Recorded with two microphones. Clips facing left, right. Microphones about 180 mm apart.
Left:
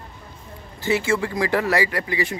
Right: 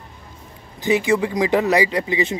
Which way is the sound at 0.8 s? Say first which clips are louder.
Right 4 dB; 15° right (ahead or behind).